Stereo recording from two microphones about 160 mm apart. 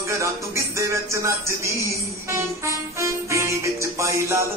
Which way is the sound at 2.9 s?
20° right (ahead or behind).